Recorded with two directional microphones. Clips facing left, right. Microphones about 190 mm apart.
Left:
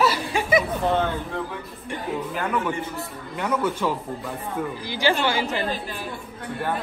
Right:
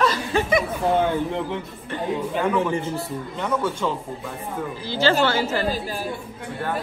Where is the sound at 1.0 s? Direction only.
15° right (ahead or behind).